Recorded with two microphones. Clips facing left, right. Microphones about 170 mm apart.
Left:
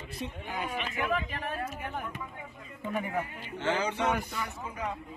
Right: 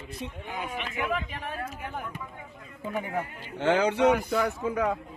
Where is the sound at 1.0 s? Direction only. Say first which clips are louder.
Right 1 dB; 15° right (ahead or behind).